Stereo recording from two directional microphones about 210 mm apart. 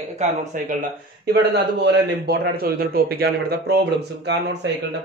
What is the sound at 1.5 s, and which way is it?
A man's voice, 55° right (ahead or behind).